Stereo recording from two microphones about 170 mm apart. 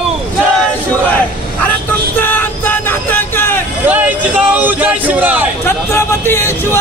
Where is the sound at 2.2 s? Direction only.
10° left (ahead or behind).